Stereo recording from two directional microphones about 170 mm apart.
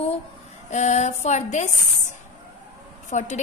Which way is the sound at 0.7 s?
45° left (ahead or behind).